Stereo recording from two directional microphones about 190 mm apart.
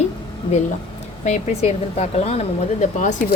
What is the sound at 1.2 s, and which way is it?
Speech, 35° left (ahead or behind).